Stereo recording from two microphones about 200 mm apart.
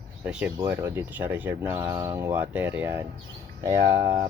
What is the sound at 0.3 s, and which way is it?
Speech, 5° right (ahead or behind).